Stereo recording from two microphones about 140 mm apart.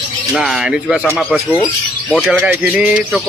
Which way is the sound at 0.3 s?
Centre (ahead or behind).